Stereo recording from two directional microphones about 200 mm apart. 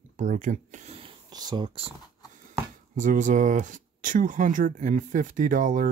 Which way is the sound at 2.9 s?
40° right (ahead or behind).